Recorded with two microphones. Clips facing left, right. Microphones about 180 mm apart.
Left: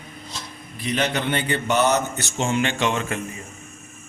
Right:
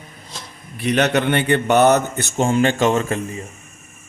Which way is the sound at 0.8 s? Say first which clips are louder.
Right 6 dB; 65° right (ahead or behind).